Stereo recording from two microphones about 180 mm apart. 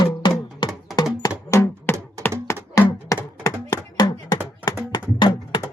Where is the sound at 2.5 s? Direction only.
15° left (ahead or behind).